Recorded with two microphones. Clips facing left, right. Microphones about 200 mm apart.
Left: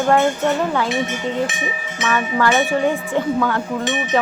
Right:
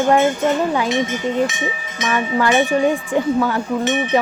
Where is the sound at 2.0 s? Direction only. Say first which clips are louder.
Right 1 dB; 15° right (ahead or behind).